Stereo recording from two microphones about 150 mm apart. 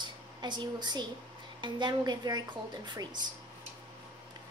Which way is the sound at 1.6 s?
30° right (ahead or behind).